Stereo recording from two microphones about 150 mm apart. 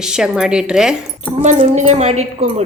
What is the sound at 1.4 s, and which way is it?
A woman's voice, 50° right (ahead or behind).